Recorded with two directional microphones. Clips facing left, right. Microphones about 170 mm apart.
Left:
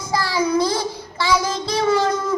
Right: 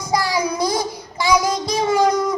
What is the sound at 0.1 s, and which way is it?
Child singing, 15° right (ahead or behind).